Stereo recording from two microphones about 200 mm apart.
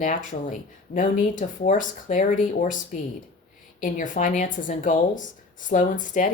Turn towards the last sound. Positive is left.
turn(degrees=40)  # may be behind; listen again after turning